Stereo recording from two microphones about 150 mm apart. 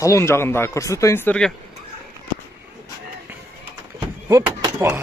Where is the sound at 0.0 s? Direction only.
20° left (ahead or behind).